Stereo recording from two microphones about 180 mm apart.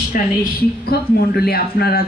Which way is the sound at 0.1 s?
45° left (ahead or behind).